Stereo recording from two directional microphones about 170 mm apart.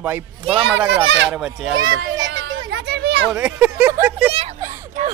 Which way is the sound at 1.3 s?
5° right (ahead or behind).